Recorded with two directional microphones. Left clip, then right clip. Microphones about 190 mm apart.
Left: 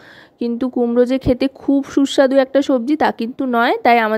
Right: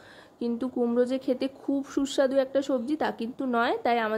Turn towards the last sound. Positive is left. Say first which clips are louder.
# left 12 dB
turn(degrees=45)  # may be behind; listen again after turning